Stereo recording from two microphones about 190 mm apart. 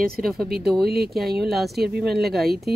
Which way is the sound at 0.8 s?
55° right (ahead or behind).